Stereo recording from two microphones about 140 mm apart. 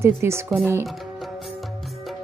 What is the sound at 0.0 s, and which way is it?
Speech, 20° right (ahead or behind).